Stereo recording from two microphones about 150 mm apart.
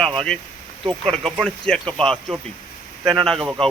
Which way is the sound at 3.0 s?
25° right (ahead or behind).